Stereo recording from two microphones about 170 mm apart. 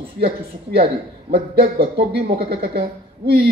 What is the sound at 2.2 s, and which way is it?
Speech, 65° right (ahead or behind).